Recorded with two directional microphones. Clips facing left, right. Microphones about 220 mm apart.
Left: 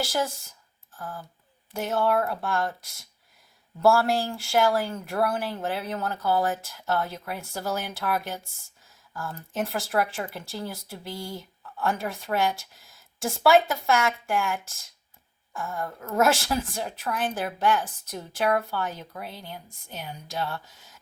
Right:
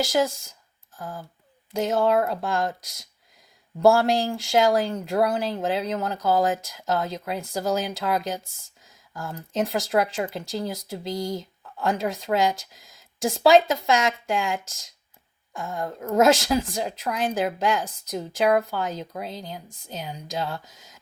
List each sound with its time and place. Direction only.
0.0 s a woman's voice: 15° right (ahead or behind)
3.8 s a woman's voice: 20° right (ahead or behind)